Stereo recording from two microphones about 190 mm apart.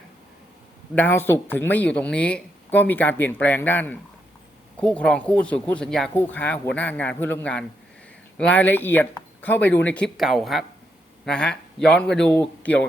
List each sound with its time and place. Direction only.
0.9 s speech: 10° left (ahead or behind)